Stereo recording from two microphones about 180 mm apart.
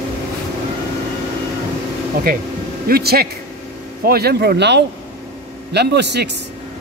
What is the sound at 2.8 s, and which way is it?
Speech, 60° right (ahead or behind).